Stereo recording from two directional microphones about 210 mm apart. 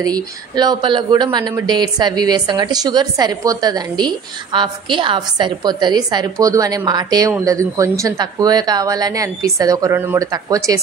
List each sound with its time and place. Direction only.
0.0 s speech: 20° right (ahead or behind)